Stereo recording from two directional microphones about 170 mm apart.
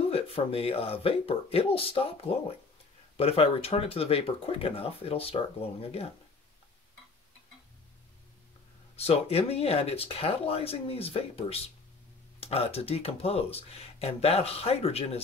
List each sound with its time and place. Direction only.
0.1 s speech: 35° left (ahead or behind)
8.9 s speech: 35° left (ahead or behind)